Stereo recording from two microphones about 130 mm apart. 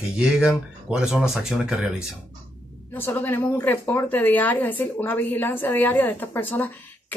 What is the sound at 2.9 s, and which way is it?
A woman's voice, 15° left (ahead or behind).